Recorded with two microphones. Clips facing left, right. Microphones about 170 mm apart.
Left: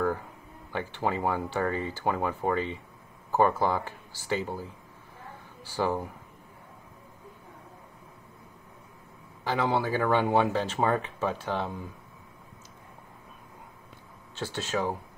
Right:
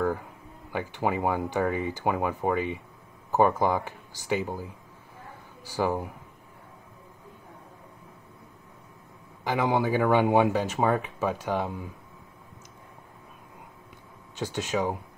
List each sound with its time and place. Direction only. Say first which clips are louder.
0.7 s speech: right 2 dB; 10° right (ahead or behind)
9.4 s speech: right 2 dB; 15° right (ahead or behind)
14.3 s speech: right 2 dB; 15° right (ahead or behind)